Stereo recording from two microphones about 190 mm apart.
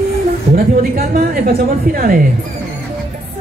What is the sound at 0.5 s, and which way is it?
A woman's voice, 50° right (ahead or behind).